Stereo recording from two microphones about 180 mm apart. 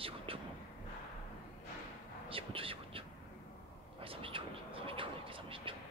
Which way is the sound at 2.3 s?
30° right (ahead or behind).